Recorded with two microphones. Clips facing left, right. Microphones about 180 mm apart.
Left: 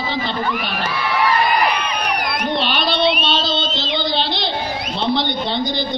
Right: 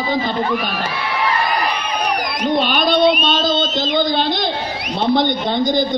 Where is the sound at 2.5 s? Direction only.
50° right (ahead or behind).